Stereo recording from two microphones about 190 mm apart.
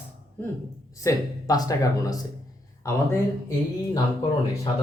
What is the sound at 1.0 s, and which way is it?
Speech, 20° left (ahead or behind).